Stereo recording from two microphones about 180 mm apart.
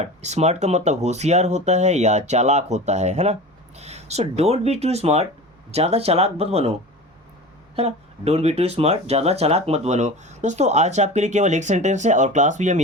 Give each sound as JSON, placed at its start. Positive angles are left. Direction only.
{"t": 0.0, "sound": "speech", "side_deg": -40}
{"t": 7.8, "sound": "speech", "side_deg": -35}